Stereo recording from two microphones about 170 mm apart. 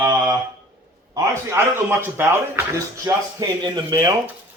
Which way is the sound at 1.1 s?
15° right (ahead or behind).